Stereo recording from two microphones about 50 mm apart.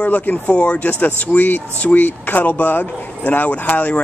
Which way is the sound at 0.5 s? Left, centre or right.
Left.